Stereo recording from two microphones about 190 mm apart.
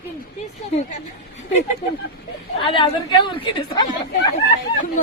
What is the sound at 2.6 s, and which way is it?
A woman's voice, 25° left (ahead or behind).